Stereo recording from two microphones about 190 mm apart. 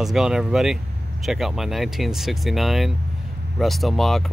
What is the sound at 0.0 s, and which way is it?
Speech, centre (ahead or behind).